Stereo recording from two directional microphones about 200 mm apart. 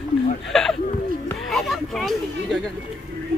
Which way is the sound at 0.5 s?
Centre (ahead or behind).